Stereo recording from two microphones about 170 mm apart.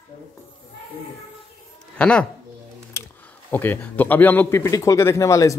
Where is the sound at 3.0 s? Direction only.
15° left (ahead or behind).